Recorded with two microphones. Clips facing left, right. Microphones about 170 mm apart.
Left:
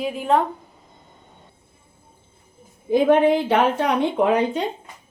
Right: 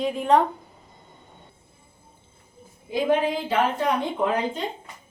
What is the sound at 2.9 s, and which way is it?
Speech, 60° left (ahead or behind).